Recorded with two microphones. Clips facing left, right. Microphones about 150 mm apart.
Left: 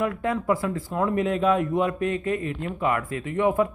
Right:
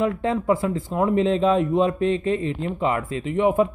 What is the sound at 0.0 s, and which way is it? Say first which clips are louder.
Speech: right 3 dB; 25° right (ahead or behind).